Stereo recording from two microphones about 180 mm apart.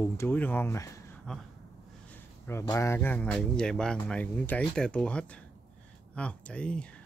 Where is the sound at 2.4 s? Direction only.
15° left (ahead or behind).